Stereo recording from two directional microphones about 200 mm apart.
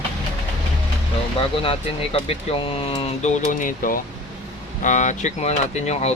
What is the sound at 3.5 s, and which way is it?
Speech, 40° left (ahead or behind).